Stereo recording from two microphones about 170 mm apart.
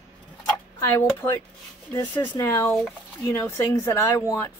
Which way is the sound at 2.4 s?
15° left (ahead or behind).